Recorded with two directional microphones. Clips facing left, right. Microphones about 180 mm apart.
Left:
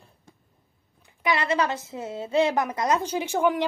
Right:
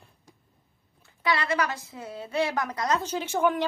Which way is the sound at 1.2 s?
20° left (ahead or behind).